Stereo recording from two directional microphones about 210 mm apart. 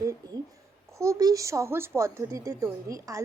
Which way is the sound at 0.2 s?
20° right (ahead or behind).